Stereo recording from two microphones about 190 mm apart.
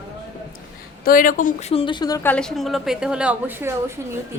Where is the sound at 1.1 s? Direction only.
45° left (ahead or behind); by 2.2 s 20° left (ahead or behind).